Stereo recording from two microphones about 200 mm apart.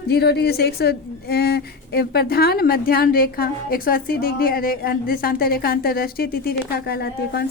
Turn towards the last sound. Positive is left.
turn(degrees=50)  # may be behind; listen again after turning